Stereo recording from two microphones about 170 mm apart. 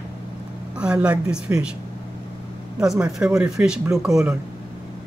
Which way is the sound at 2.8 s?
5° right (ahead or behind).